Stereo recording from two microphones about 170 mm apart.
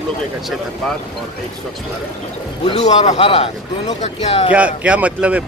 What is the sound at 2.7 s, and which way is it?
Speech, 40° left (ahead or behind).